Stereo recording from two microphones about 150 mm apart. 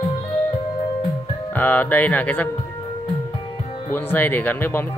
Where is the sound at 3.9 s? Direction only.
15° left (ahead or behind).